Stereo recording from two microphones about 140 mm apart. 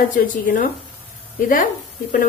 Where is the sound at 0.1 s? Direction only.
70° left (ahead or behind).